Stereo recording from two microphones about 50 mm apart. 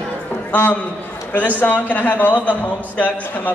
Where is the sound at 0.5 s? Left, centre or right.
Left.